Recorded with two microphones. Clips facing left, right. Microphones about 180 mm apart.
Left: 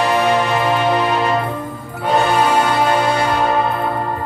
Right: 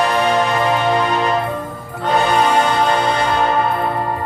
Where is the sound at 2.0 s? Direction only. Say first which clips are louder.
Even; 10° left (ahead or behind).